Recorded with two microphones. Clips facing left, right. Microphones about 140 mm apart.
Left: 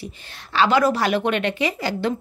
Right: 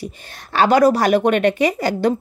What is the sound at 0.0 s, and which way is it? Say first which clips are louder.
Speech: right 5 dB; 45° right (ahead or behind).